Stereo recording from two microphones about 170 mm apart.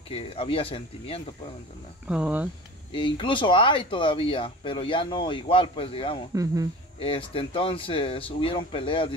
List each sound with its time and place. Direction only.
0.1 s speech: 35° left (ahead or behind)
2.0 s speech: 5° right (ahead or behind)
2.9 s speech: 30° left (ahead or behind)
6.3 s speech: 20° right (ahead or behind)
7.0 s speech: 30° left (ahead or behind)